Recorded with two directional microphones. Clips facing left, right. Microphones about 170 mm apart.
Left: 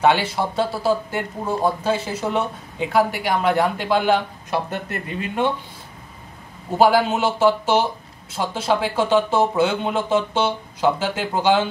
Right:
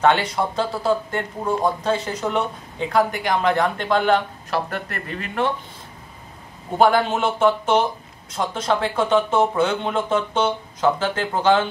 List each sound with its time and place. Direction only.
0.0 s speech: 10° left (ahead or behind)
4.5 s speech: 20° left (ahead or behind)
6.8 s a man's voice: 5° left (ahead or behind)